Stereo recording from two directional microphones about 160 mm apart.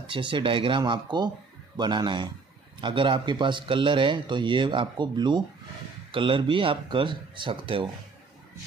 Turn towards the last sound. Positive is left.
turn(degrees=-30)  # may be behind; listen again after turning